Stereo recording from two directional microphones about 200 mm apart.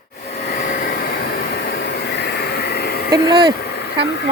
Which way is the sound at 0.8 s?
50° left (ahead or behind).